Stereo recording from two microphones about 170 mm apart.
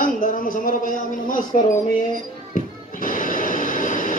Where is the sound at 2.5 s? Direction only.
50° left (ahead or behind).